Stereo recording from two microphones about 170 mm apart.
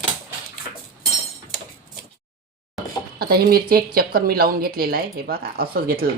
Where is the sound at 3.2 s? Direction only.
65° right (ahead or behind).